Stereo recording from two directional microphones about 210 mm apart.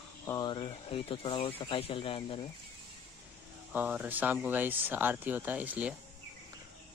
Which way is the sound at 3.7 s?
5° right (ahead or behind).